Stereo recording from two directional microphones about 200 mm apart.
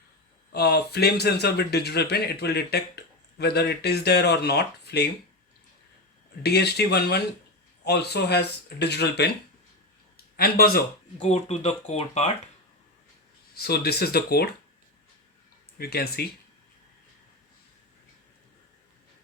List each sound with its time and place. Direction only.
0.5 s speech: 55° left (ahead or behind)
6.4 s speech: 55° left (ahead or behind)
10.3 s speech: 50° left (ahead or behind)
11.2 s speech: 35° left (ahead or behind)
13.6 s speech: 50° left (ahead or behind)
15.8 s speech: 50° left (ahead or behind)